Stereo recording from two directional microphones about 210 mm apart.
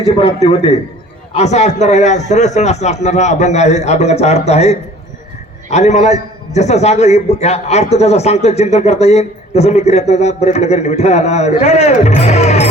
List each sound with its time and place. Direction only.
0.2 s a man's voice: 30° left (ahead or behind)